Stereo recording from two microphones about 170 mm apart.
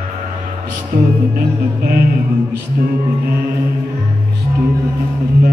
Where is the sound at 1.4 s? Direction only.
65° right (ahead or behind).